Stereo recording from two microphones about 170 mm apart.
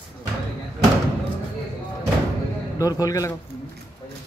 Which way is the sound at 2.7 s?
20° left (ahead or behind).